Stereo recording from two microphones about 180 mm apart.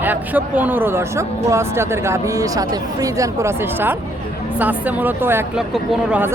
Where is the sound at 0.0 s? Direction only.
10° right (ahead or behind).